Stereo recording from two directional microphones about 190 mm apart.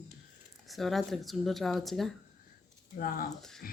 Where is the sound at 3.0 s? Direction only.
50° left (ahead or behind).